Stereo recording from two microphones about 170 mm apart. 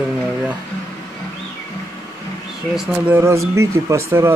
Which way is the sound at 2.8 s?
5° right (ahead or behind).